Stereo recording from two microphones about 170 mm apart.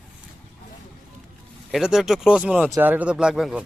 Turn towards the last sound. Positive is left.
turn(degrees=-5)  # may be behind; listen again after turning